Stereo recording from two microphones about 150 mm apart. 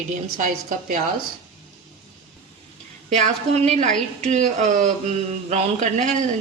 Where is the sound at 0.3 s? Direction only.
60° right (ahead or behind).